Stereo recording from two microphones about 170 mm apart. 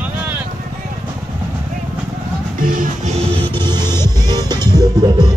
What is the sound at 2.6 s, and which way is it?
Music, 55° right (ahead or behind).